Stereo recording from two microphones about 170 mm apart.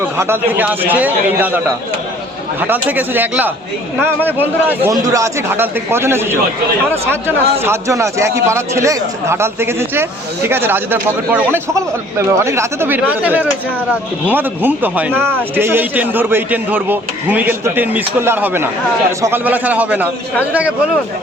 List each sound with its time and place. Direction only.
0.2 s a man's voice: 10° right (ahead or behind)
15.1 s speech: 5° left (ahead or behind)
15.5 s a man's voice: 10° right (ahead or behind)